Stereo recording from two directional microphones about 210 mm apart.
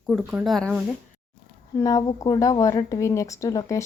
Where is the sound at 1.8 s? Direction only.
15° left (ahead or behind).